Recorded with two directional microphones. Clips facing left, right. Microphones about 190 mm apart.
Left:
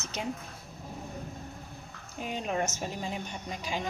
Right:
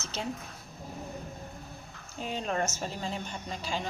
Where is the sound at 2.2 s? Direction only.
15° left (ahead or behind).